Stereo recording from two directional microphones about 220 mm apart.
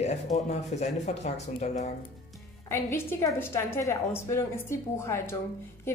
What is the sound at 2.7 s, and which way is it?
A woman's voice, 10° left (ahead or behind).